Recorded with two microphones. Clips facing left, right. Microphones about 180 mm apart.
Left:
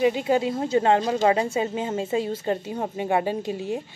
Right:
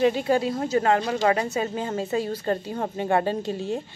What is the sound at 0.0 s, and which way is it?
A woman's voice, 15° left (ahead or behind).